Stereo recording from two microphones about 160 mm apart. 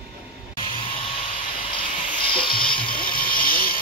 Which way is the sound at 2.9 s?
60° left (ahead or behind).